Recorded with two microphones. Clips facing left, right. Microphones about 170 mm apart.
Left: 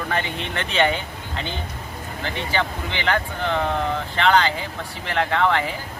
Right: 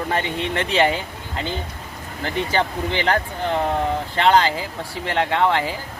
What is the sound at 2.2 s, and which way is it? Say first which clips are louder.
Speech: right 3 dB; 40° right (ahead or behind).